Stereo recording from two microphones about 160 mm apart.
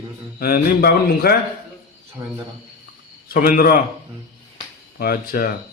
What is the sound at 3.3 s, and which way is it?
Speech, 65° left (ahead or behind).